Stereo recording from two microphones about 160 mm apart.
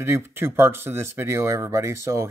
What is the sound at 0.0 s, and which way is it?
Speech, 15° right (ahead or behind).